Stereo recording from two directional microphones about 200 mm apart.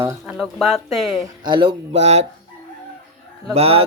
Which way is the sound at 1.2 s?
20° right (ahead or behind).